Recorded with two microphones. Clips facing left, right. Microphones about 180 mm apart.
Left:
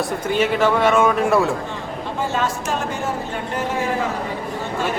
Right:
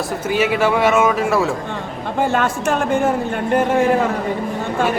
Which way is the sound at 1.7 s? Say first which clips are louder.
Right 3 dB; 55° right (ahead or behind).